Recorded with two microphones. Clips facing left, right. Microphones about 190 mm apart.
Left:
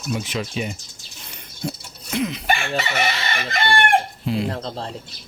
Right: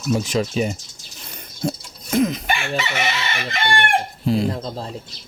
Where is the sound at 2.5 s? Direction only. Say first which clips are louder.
Left 1 dB; 40° left (ahead or behind).